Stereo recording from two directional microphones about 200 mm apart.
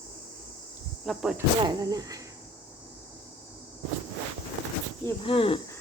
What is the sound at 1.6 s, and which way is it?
Speech, 20° right (ahead or behind).